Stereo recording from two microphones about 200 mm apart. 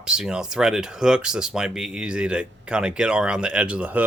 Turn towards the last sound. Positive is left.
turn(degrees=-5)  # may be behind; listen again after turning